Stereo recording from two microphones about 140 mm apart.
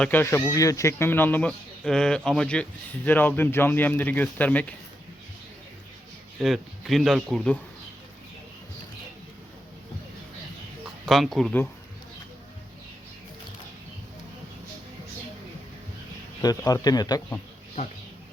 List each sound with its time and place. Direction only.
0.0 s speech: 15° left (ahead or behind)
6.4 s speech: centre (ahead or behind)
11.0 s speech: centre (ahead or behind)
16.4 s a man's voice: 25° left (ahead or behind)